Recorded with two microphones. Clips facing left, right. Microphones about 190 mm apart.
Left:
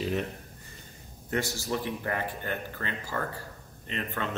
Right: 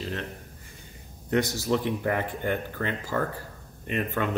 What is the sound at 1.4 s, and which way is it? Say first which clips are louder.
Speech: right 5 dB; 20° right (ahead or behind).